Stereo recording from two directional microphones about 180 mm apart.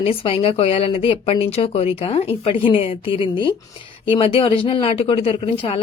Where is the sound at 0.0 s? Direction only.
30° left (ahead or behind).